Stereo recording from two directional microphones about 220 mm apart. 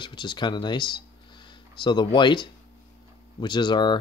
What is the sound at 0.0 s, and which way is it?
Speech, 20° left (ahead or behind).